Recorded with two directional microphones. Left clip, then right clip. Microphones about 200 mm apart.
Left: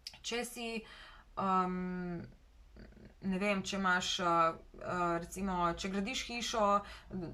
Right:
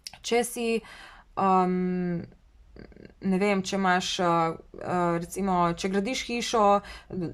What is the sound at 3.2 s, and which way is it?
Speech, 40° right (ahead or behind).